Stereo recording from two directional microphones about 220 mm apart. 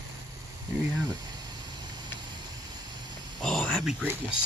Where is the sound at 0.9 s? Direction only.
20° right (ahead or behind).